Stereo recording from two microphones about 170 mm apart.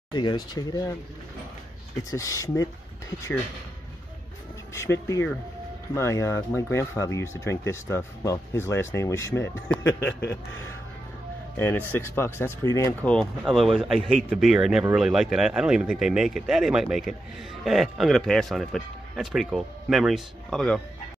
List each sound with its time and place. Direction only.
0.1 s speech: 25° left (ahead or behind)
2.0 s speech: 20° left (ahead or behind)
5.0 s speech: 15° left (ahead or behind)
11.5 s speech: 10° left (ahead or behind)
13.4 s speech: centre (ahead or behind)